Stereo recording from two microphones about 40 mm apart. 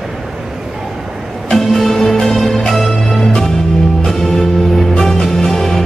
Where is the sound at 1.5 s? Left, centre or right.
Centre.